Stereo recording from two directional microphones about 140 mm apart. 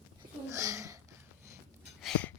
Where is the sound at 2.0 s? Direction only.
Centre (ahead or behind).